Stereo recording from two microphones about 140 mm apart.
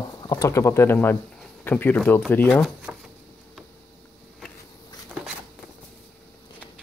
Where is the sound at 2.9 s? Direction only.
10° right (ahead or behind).